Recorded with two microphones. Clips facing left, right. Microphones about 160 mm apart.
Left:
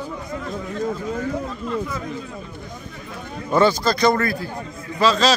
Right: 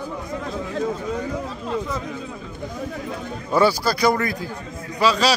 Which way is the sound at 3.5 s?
10° right (ahead or behind).